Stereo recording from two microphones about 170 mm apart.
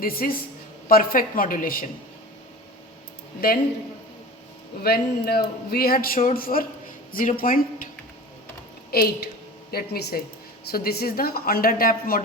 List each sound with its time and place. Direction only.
0.0 s speech: 60° left (ahead or behind)
4.8 s speech: 65° left (ahead or behind)
8.9 s speech: 65° left (ahead or behind)